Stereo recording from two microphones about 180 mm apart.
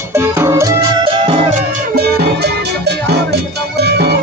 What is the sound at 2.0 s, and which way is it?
Music, 65° right (ahead or behind).